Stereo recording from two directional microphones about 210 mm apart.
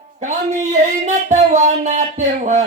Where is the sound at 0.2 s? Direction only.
35° right (ahead or behind).